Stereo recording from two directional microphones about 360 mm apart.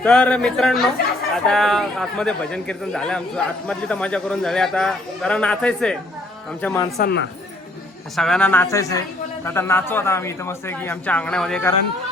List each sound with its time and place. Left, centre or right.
0.0 s speech: centre
6.9 s speech: left
8.1 s speech: centre